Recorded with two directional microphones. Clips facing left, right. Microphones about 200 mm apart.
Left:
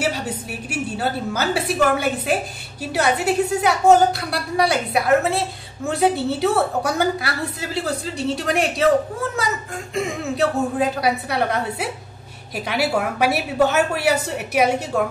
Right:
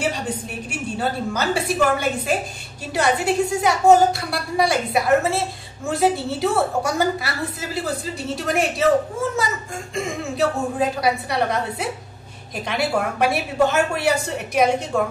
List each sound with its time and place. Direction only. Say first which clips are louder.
0.0 s a woman's voice: even; 5° left (ahead or behind)
9.9 s a woman's voice: left 2 dB; centre (ahead or behind)